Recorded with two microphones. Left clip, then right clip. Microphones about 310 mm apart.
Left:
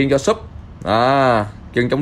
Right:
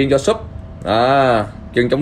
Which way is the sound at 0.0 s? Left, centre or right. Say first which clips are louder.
Right 1 dB; left.